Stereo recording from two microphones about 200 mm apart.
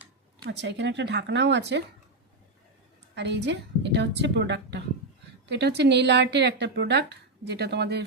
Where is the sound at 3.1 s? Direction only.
60° right (ahead or behind).